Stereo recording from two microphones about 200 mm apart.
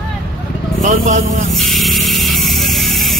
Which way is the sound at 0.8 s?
40° right (ahead or behind).